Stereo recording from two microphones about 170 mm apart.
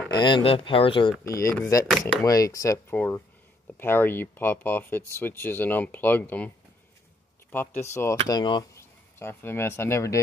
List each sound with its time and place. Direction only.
0.1 s speech: 25° left (ahead or behind)
1.2 s speech: 20° left (ahead or behind)
7.5 s speech: 10° left (ahead or behind)
8.3 s speech: 25° left (ahead or behind)
9.2 s speech: 15° left (ahead or behind)